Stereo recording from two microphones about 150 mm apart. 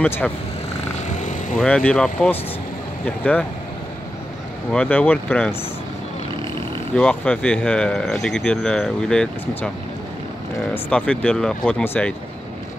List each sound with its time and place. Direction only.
0.0 s speech: 10° left (ahead or behind)
1.0 s vehicle: 50° left (ahead or behind)
1.6 s speech: 10° left (ahead or behind)
4.7 s speech: 10° left (ahead or behind)
7.0 s speech: 10° left (ahead or behind)
10.7 s speech: 10° left (ahead or behind)